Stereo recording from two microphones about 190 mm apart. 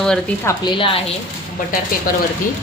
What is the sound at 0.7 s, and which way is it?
Speech, 25° left (ahead or behind).